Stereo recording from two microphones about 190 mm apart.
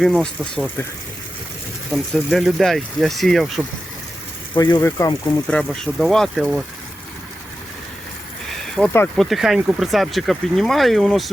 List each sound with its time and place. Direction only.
0.0 s speech: 5° left (ahead or behind)
1.9 s speech: centre (ahead or behind)
4.5 s speech: 20° left (ahead or behind)
5.5 s speech: 5° left (ahead or behind)
8.7 s speech: 10° left (ahead or behind)